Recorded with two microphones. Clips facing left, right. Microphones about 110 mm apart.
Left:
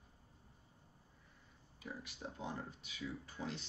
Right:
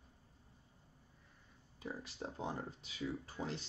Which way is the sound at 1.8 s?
30° right (ahead or behind).